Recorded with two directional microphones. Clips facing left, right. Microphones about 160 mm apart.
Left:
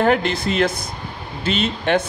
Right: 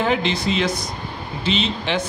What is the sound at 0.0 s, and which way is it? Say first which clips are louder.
Speech: left 3 dB; 55° left (ahead or behind).